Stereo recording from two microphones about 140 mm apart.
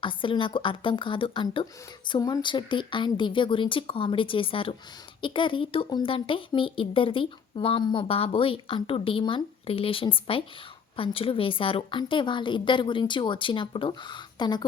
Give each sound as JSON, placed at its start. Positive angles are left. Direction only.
{"t": 0.0, "sound": "speech", "side_deg": 35}